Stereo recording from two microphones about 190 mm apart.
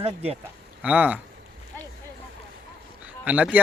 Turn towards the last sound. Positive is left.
turn(degrees=-10)  # may be behind; listen again after turning